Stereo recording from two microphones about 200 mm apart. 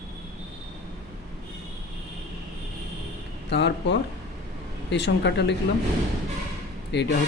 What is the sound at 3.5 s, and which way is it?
Speech, 60° left (ahead or behind).